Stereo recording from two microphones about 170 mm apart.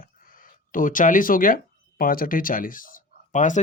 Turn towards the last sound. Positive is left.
turn(degrees=50)  # may be behind; listen again after turning